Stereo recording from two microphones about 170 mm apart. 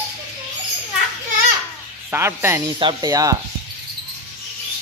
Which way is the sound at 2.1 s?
15° right (ahead or behind).